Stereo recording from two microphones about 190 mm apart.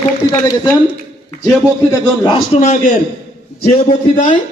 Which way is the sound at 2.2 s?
25° left (ahead or behind).